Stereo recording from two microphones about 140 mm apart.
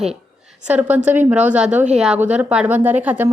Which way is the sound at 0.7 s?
10° right (ahead or behind).